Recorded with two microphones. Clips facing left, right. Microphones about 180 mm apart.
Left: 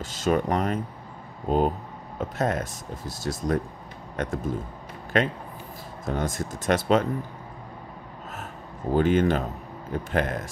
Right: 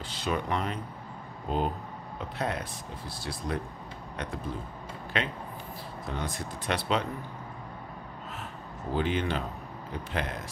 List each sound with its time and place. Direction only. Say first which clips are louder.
0.0 s speech: left 7 dB; 45° left (ahead or behind)
8.9 s speech: left 8 dB; 45° left (ahead or behind)